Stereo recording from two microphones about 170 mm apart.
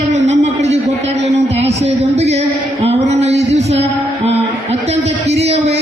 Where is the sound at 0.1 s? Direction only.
40° right (ahead or behind).